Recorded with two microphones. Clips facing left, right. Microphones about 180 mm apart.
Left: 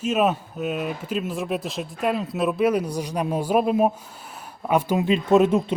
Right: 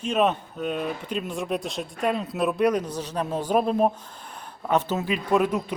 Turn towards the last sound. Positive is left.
turn(degrees=25)  # may be behind; listen again after turning